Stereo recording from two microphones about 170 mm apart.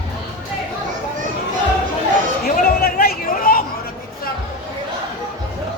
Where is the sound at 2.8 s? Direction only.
60° left (ahead or behind).